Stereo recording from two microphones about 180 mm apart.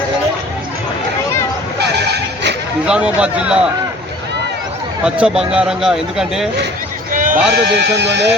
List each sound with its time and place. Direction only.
2.8 s a man's voice: 5° right (ahead or behind)
5.0 s speech: 5° right (ahead or behind)
7.1 s sheep: 45° right (ahead or behind)
7.5 s speech: 65° right (ahead or behind)